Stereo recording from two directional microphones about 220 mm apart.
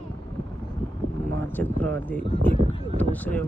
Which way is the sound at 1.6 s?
5° left (ahead or behind).